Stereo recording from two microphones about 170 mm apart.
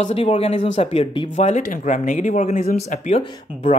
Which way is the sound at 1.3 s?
45° left (ahead or behind).